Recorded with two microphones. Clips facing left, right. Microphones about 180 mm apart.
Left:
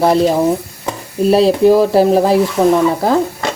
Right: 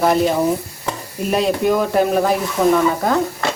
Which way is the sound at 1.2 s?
30° left (ahead or behind).